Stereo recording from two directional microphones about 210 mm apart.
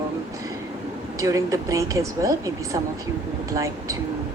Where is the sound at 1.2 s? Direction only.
15° right (ahead or behind).